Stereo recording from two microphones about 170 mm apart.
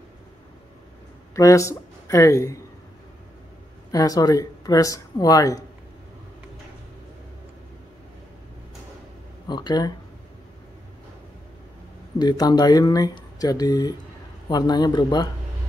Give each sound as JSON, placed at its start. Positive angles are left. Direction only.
{"t": 1.3, "sound": "speech", "side_deg": 20}
{"t": 3.9, "sound": "speech", "side_deg": 20}
{"t": 9.5, "sound": "speech", "side_deg": 25}
{"t": 12.2, "sound": "speech", "side_deg": 25}